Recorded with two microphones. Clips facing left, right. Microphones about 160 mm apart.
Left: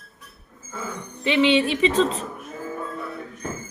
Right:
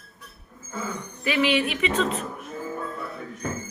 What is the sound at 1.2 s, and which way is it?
A woman's voice, 25° left (ahead or behind).